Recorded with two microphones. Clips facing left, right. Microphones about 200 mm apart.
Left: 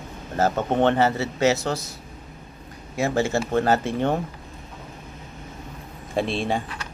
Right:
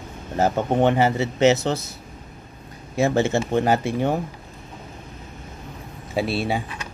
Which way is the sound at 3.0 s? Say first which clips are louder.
Right 3 dB; 25° right (ahead or behind).